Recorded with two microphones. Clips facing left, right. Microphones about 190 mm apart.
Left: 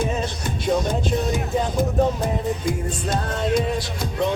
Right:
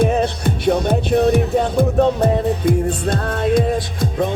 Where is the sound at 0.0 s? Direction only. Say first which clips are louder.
Right 8 dB; 60° right (ahead or behind).